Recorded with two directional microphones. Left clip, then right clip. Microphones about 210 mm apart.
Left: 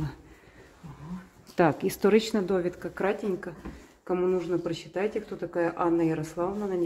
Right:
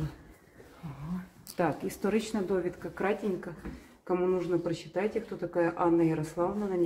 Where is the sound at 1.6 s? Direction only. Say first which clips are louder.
Left 7 dB; 40° left (ahead or behind).